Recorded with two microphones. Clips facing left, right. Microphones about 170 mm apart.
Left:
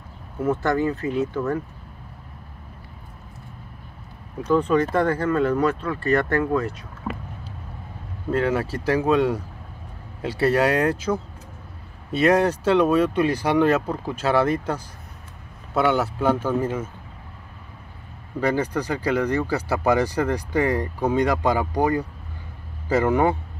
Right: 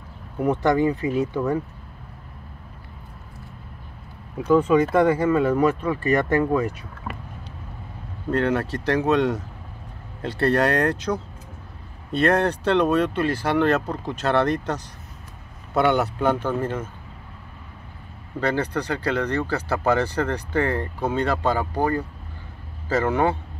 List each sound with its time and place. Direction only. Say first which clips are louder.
0.4 s speech: right 2 dB; 15° right (ahead or behind)
4.4 s speech: right 2 dB; 10° right (ahead or behind)
8.3 s speech: even; 5° left (ahead or behind)
18.4 s speech: left 1 dB; 10° left (ahead or behind)